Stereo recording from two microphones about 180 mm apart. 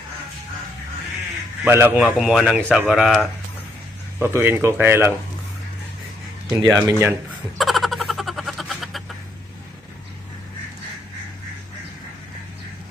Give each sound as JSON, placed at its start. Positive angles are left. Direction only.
{"t": 1.6, "sound": "speech", "side_deg": -10}
{"t": 2.1, "sound": "speech", "side_deg": 0}
{"t": 4.2, "sound": "speech", "side_deg": -10}
{"t": 6.5, "sound": "speech", "side_deg": -15}
{"t": 7.5, "sound": "a sound", "side_deg": 0}